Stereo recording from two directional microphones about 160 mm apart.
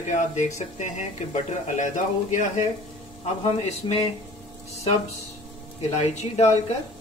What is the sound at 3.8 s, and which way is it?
Speech, 35° left (ahead or behind).